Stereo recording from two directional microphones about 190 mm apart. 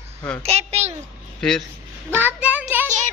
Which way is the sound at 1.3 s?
5° left (ahead or behind).